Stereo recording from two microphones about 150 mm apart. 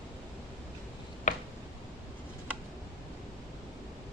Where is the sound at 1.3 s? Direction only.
55° left (ahead or behind).